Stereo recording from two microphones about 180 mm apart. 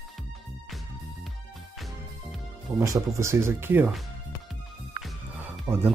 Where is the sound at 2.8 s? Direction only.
15° right (ahead or behind).